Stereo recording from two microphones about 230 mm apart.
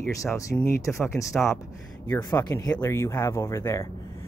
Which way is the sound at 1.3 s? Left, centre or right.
Centre.